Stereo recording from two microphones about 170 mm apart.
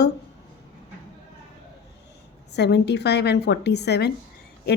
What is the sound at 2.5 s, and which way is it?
A woman's voice, 80° left.